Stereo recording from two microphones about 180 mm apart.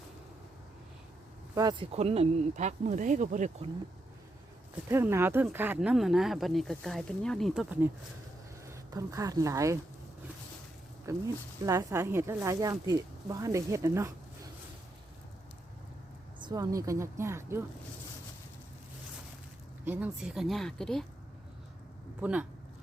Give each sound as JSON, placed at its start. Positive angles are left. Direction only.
{"t": 1.8, "sound": "speech", "side_deg": -35}
{"t": 4.9, "sound": "speech", "side_deg": -15}
{"t": 8.6, "sound": "speech", "side_deg": -15}
{"t": 11.1, "sound": "speech", "side_deg": -15}
{"t": 16.4, "sound": "speech", "side_deg": -20}
{"t": 19.8, "sound": "speech", "side_deg": -10}
{"t": 22.2, "sound": "speech", "side_deg": -5}